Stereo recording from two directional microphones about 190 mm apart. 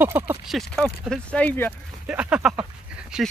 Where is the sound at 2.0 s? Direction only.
5° right (ahead or behind).